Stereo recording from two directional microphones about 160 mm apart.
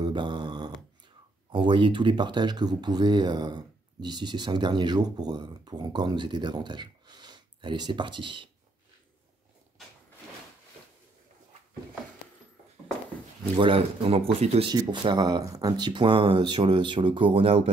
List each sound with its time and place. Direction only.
0.0 s a sound: 30° right (ahead or behind)
1.5 s speech: 30° right (ahead or behind)
13.6 s speech: 35° right (ahead or behind)
14.7 s speech: 25° right (ahead or behind)